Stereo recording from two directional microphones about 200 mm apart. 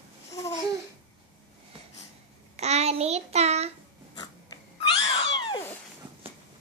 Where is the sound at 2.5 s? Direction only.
35° right (ahead or behind).